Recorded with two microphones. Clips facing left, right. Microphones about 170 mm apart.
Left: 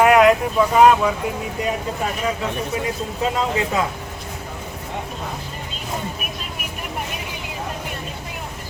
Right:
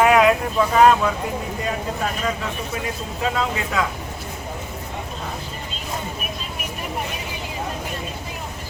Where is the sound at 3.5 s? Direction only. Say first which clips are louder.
Left 3 dB; 25° left (ahead or behind).